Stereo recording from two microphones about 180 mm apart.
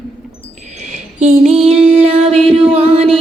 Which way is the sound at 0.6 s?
40° right (ahead or behind).